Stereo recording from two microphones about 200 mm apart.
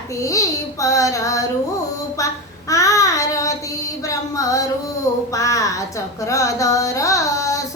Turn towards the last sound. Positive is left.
turn(degrees=15)  # may be behind; listen again after turning